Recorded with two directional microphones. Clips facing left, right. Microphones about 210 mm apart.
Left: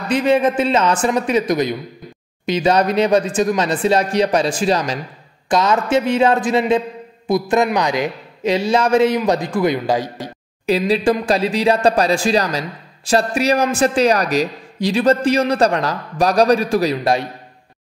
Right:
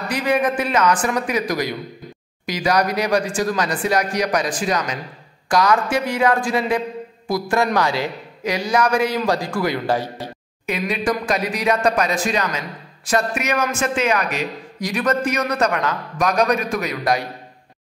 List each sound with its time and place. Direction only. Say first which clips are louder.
0.1 s a man's voice: left 5 dB; 25° left (ahead or behind)
10.7 s speech: left 6 dB; 30° left (ahead or behind)